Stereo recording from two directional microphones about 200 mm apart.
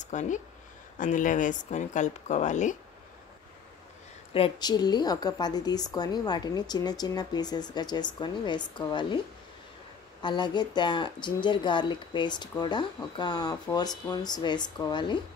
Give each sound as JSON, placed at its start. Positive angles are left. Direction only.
{"t": 0.0, "sound": "speech", "side_deg": 35}
{"t": 4.3, "sound": "speech", "side_deg": 25}
{"t": 10.2, "sound": "speech", "side_deg": 20}